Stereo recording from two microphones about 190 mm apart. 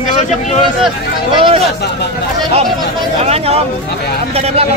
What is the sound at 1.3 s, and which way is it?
Speech, 30° right (ahead or behind).